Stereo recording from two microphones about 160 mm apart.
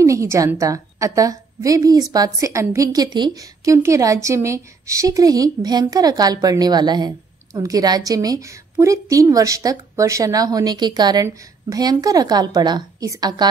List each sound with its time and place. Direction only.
0.0 s a woman's voice: 20° right (ahead or behind)